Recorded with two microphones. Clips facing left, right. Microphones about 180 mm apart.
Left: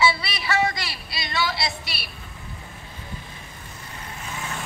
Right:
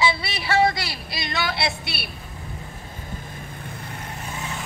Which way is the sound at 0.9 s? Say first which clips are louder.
Right 3 dB; 50° right (ahead or behind).